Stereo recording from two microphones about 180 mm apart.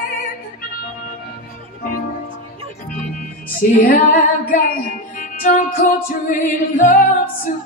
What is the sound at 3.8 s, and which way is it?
Music, 50° left (ahead or behind).